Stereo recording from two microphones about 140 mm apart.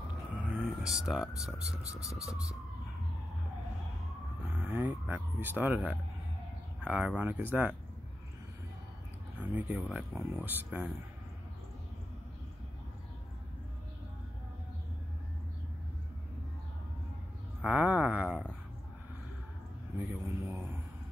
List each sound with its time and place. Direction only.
0.6 s speech: 5° right (ahead or behind)
2.0 s siren: 20° left (ahead or behind)
4.5 s speech: 5° right (ahead or behind)
9.4 s speech: 10° right (ahead or behind)
17.6 s a sound: 10° right (ahead or behind)
20.0 s a sound: 15° right (ahead or behind)